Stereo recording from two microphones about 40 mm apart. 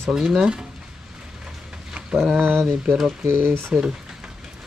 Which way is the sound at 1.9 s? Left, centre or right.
Right.